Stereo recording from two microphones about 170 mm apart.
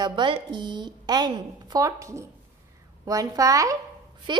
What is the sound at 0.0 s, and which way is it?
A woman's voice, 30° right (ahead or behind).